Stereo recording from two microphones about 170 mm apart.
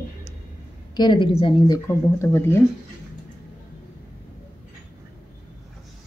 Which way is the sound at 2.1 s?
15° left (ahead or behind).